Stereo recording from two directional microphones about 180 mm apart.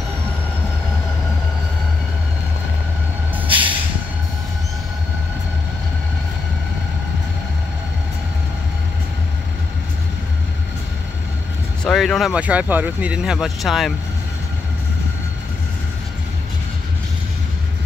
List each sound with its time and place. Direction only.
3.4 s vehicle: 30° right (ahead or behind)
11.8 s speech: centre (ahead or behind)